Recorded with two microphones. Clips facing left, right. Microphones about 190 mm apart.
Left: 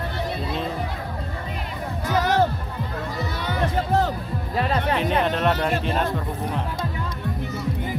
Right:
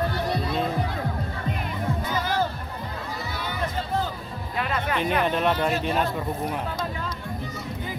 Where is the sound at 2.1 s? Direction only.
75° left (ahead or behind).